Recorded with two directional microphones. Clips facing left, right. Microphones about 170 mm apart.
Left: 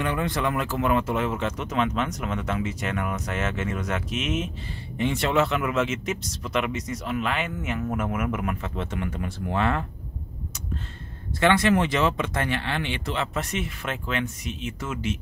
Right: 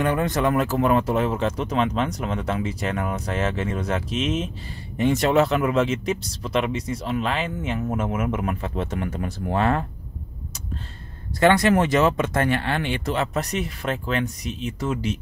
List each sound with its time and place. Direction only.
0.0 s speech: 45° right (ahead or behind)
11.3 s speech: 40° right (ahead or behind)